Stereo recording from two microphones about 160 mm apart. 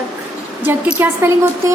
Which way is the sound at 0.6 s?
10° right (ahead or behind).